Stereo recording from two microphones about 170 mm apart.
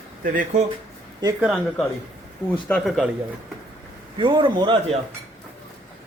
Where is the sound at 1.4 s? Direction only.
Centre (ahead or behind).